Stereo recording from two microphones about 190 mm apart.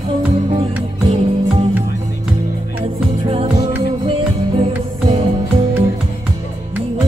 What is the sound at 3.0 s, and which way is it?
Music, 30° right (ahead or behind).